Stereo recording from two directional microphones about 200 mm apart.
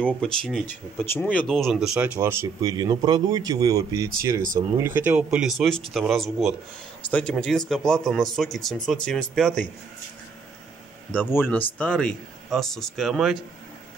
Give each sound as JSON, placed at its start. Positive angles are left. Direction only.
{"t": 0.0, "sound": "speech", "side_deg": 5}
{"t": 2.1, "sound": "speech", "side_deg": -15}
{"t": 4.1, "sound": "speech", "side_deg": -40}
{"t": 4.7, "sound": "speech", "side_deg": -10}
{"t": 11.1, "sound": "speech", "side_deg": 10}